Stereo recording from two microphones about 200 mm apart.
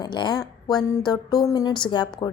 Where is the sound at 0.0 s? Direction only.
20° left (ahead or behind).